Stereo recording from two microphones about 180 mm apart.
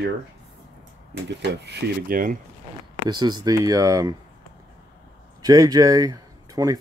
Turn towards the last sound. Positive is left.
turn(degrees=-20)  # may be behind; listen again after turning